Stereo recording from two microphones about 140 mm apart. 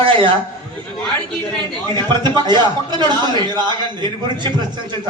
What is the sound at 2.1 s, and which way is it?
A man's voice, 30° right (ahead or behind).